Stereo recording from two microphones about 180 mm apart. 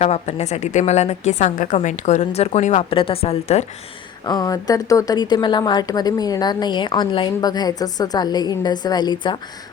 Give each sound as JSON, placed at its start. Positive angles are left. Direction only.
{"t": 0.0, "sound": "a woman's voice", "side_deg": 35}
{"t": 4.3, "sound": "a woman's voice", "side_deg": 20}